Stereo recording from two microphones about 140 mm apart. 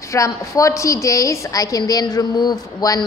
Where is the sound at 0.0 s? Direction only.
25° left (ahead or behind).